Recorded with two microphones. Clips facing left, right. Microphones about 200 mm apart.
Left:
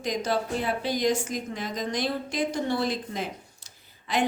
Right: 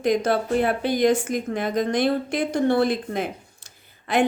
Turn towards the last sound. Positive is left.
turn(degrees=-55)  # may be behind; listen again after turning